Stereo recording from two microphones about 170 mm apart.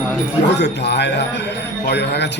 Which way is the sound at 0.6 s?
90° left.